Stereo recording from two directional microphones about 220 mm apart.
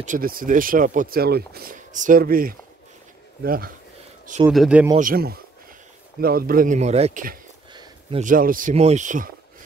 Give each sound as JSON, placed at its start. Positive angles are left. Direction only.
{"t": 0.0, "sound": "speech", "side_deg": -40}
{"t": 4.5, "sound": "speech", "side_deg": -5}
{"t": 4.9, "sound": "speech", "side_deg": -40}
{"t": 7.7, "sound": "a sound", "side_deg": -20}
{"t": 8.2, "sound": "speech", "side_deg": -40}